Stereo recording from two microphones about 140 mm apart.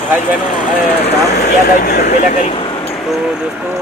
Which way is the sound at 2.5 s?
40° left (ahead or behind).